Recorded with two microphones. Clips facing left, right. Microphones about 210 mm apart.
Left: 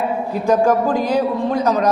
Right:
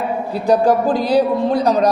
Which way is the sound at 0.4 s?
35° right (ahead or behind).